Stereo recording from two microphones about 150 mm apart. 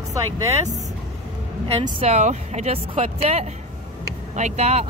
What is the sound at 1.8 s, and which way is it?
Speech, 40° right (ahead or behind).